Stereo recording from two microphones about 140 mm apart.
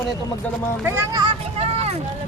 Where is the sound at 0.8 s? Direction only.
15° right (ahead or behind).